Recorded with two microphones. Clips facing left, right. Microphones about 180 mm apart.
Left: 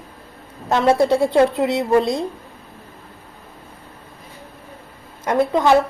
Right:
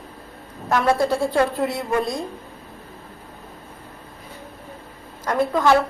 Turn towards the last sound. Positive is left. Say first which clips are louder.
# left 3 dB
turn(degrees=20)  # may be behind; listen again after turning